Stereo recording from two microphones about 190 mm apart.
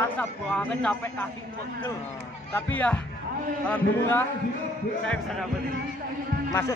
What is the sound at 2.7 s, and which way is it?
Speech, 5° left (ahead or behind).